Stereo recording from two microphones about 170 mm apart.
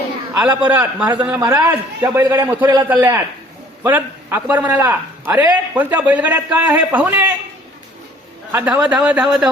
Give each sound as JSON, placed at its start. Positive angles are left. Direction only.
{"t": 0.3, "sound": "a man's voice", "side_deg": -10}
{"t": 8.5, "sound": "a man's voice", "side_deg": -10}